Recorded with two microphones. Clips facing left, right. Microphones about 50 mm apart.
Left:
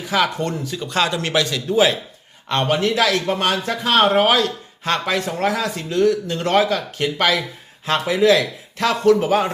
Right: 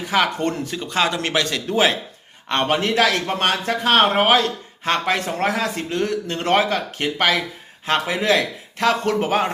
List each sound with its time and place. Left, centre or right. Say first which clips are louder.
0.1 s a man's voice: even; right